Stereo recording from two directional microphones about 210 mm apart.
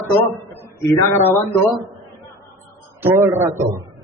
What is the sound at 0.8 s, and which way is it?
Speech, 10° left (ahead or behind).